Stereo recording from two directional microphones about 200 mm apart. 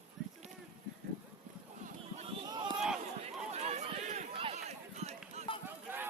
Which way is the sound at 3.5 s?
35° right (ahead or behind).